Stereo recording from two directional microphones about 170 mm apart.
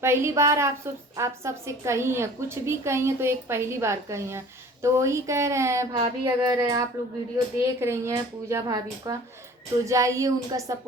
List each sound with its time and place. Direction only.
0.0 s a woman's voice: 15° right (ahead or behind)